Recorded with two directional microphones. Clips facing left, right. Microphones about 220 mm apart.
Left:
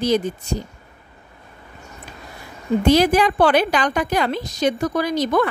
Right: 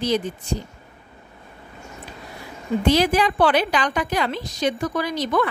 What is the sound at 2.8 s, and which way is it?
Speech, 45° left (ahead or behind).